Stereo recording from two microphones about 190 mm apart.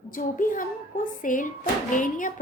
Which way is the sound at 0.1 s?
45° left (ahead or behind).